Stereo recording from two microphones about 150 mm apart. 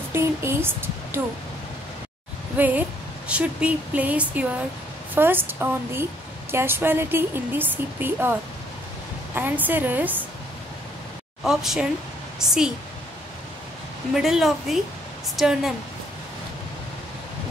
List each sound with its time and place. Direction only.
0.1 s speech: 15° right (ahead or behind)
2.5 s speech: 10° right (ahead or behind)
11.4 s speech: centre (ahead or behind)
14.1 s speech: centre (ahead or behind)